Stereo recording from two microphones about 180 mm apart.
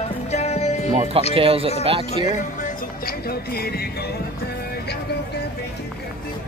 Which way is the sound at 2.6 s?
55° left (ahead or behind).